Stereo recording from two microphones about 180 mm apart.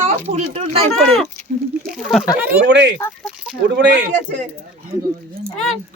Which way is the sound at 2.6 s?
80° right.